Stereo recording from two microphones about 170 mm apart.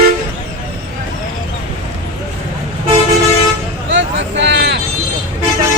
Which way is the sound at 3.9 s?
90° right.